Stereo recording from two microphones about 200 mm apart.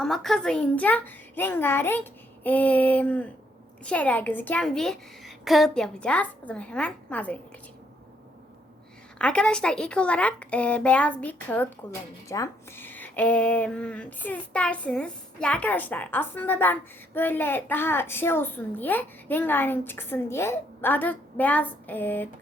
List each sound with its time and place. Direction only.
0.0 s a woman's voice: centre (ahead or behind)
9.1 s a woman's voice: 5° left (ahead or behind)